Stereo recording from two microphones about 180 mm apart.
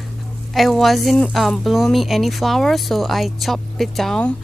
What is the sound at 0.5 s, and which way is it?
Speech, centre (ahead or behind).